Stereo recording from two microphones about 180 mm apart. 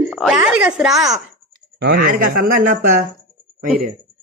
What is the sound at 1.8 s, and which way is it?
A man's voice, 60° right (ahead or behind).